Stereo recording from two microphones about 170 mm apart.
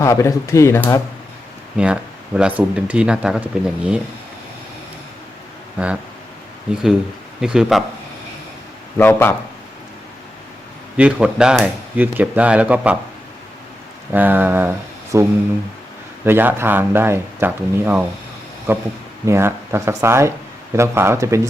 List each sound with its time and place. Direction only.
0.0 s speech: 20° left (ahead or behind)
1.7 s speech: 5° right (ahead or behind)
7.4 s speech: 5° right (ahead or behind)
9.0 s speech: 15° left (ahead or behind)
10.9 s speech: 5° right (ahead or behind)
14.1 s speech: 10° right (ahead or behind)
16.2 s speech: 10° right (ahead or behind)